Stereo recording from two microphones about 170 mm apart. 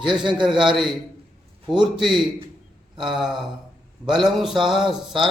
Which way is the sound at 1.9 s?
Centre (ahead or behind).